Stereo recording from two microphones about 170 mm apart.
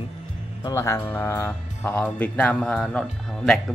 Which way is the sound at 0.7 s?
15° left (ahead or behind).